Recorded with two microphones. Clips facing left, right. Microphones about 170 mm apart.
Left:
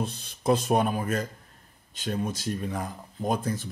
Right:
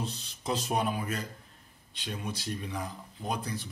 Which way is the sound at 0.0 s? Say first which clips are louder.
Left 8 dB; 55° left (ahead or behind).